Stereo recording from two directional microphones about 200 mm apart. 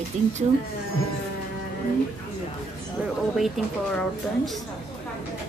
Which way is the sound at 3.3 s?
Centre (ahead or behind).